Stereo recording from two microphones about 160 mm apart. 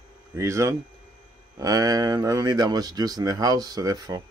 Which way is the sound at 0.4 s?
20° right (ahead or behind).